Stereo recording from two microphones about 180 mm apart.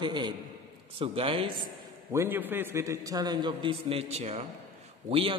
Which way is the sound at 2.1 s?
15° right (ahead or behind).